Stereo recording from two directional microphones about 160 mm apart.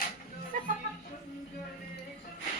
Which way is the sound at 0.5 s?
60° right (ahead or behind).